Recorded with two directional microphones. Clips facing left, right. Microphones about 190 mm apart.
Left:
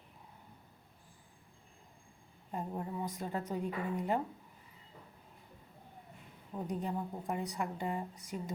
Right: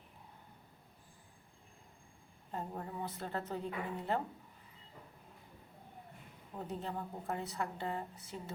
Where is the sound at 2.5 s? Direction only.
15° left (ahead or behind).